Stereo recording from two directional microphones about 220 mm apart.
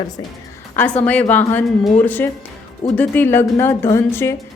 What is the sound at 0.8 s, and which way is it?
Speech, 5° left (ahead or behind).